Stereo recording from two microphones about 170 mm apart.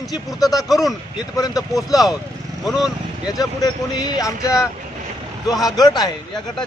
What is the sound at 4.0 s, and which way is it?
Speech, 20° left (ahead or behind).